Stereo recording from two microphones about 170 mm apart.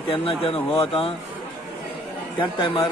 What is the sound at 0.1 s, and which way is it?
Speech, 30° left (ahead or behind).